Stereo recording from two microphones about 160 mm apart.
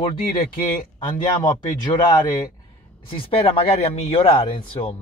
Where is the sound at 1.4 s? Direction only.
30° left (ahead or behind).